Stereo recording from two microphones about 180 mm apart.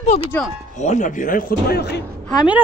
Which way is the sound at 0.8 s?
40° left (ahead or behind).